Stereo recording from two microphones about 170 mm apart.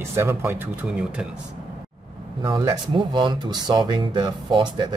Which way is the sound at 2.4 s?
20° right (ahead or behind).